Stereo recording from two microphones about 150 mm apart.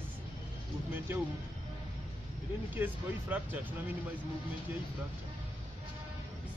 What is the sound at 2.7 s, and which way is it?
Speech, 10° right (ahead or behind).